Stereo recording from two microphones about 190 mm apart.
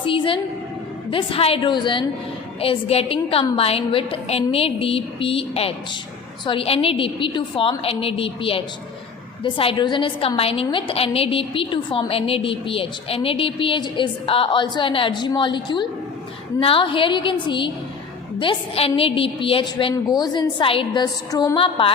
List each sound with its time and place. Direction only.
0.0 s a woman's voice: 25° left (ahead or behind)